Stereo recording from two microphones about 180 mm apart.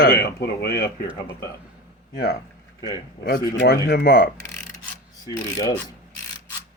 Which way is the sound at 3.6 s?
60° left (ahead or behind).